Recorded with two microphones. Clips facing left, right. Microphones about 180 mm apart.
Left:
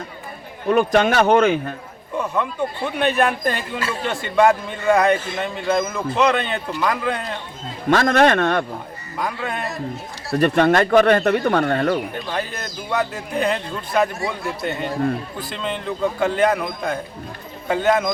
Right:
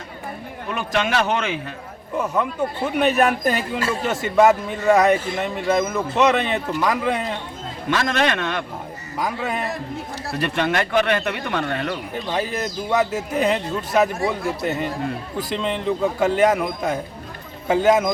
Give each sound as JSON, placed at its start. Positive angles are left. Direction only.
{"t": 0.7, "sound": "speech", "side_deg": 45}
{"t": 2.1, "sound": "speech", "side_deg": -5}
{"t": 7.9, "sound": "speech", "side_deg": 50}
{"t": 9.2, "sound": "speech", "side_deg": -5}
{"t": 10.3, "sound": "speech", "side_deg": 45}
{"t": 12.1, "sound": "speech", "side_deg": -5}